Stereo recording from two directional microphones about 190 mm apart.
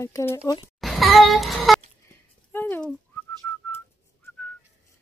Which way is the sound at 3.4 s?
10° left (ahead or behind).